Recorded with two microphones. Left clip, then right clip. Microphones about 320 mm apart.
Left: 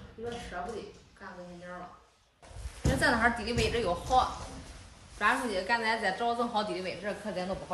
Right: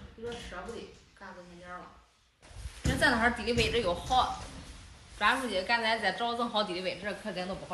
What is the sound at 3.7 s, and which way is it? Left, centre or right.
Speech, centre.